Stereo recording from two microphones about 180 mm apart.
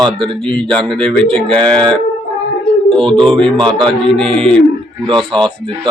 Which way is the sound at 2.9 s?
30° right (ahead or behind).